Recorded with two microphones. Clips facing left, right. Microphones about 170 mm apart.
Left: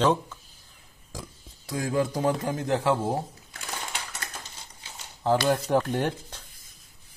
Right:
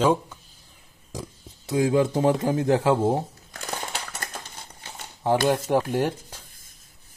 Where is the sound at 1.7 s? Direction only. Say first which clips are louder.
Right 6 dB; 20° right (ahead or behind).